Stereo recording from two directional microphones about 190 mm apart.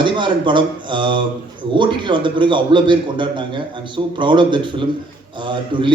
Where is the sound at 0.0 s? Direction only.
25° right (ahead or behind).